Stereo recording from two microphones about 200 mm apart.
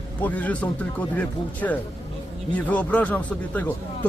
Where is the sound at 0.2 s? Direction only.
5° left (ahead or behind).